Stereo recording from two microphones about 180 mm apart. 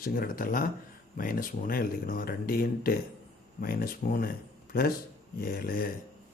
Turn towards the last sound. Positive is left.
turn(degrees=55)  # may be behind; listen again after turning